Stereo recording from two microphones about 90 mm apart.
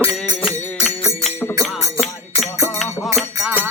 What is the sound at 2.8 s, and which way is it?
Music, centre (ahead or behind).